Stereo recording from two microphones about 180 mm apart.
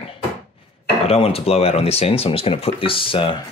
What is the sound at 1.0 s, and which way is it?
Speech, 35° left (ahead or behind).